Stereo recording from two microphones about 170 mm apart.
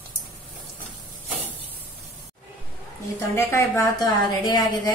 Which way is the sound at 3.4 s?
15° left (ahead or behind).